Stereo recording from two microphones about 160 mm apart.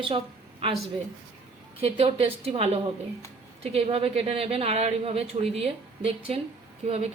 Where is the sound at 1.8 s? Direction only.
35° right (ahead or behind).